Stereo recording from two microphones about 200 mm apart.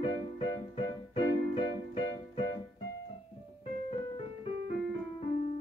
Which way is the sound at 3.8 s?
30° left (ahead or behind).